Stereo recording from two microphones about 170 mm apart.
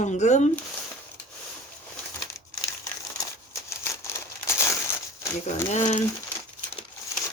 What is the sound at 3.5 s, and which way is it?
Crumpling, 15° left (ahead or behind).